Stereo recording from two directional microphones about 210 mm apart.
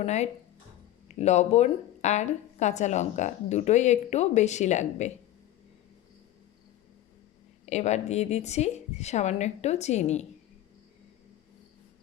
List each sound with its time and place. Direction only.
0.0 s speech: 30° left (ahead or behind)
7.6 s speech: 30° left (ahead or behind)